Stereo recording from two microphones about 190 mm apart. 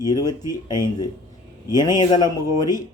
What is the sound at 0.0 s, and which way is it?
Speech, 20° left (ahead or behind).